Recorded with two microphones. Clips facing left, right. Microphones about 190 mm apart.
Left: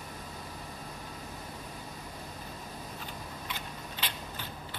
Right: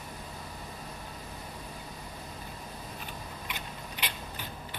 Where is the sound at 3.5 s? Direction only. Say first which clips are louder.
Even; 15° right (ahead or behind).